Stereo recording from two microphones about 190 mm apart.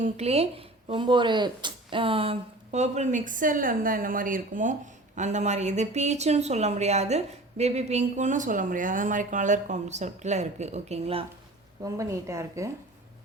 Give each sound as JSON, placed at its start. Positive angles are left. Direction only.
{"t": 0.0, "sound": "speech", "side_deg": -35}
{"t": 11.8, "sound": "a woman's voice", "side_deg": -15}